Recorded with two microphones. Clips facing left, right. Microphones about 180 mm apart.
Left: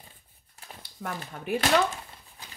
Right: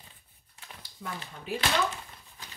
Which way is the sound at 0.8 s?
60° left (ahead or behind).